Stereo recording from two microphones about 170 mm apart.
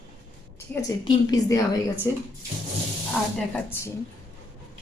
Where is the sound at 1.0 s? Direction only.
25° left (ahead or behind).